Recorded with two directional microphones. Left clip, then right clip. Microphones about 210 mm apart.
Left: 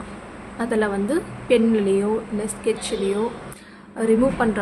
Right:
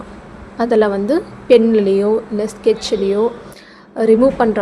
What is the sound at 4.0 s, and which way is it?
Speech, 15° right (ahead or behind).